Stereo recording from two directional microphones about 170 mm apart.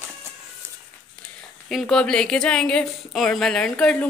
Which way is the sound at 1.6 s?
5° left (ahead or behind).